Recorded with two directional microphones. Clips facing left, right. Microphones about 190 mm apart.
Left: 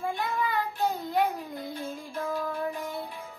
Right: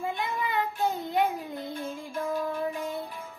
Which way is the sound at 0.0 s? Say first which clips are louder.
Left 1 dB; 20° right (ahead or behind).